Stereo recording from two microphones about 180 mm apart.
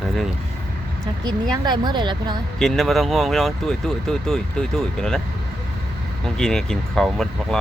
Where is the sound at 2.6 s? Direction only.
Centre (ahead or behind).